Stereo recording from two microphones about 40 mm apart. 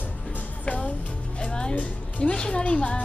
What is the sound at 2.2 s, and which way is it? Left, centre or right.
Speech, left.